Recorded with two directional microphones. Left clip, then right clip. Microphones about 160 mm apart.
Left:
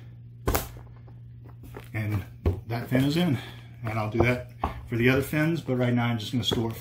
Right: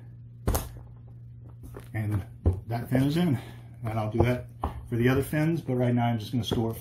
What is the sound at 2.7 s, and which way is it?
Speech, 20° right (ahead or behind).